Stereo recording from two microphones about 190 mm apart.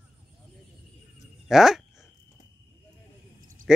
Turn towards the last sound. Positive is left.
turn(degrees=-5)  # may be behind; listen again after turning